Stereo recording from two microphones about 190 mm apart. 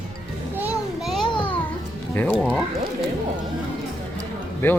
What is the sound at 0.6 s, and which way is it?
Children playing, 5° right (ahead or behind).